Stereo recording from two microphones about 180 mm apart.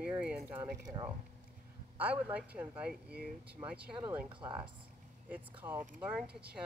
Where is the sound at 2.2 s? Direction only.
10° right (ahead or behind).